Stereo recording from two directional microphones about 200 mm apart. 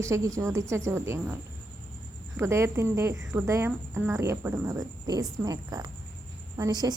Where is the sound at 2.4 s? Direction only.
15° right (ahead or behind).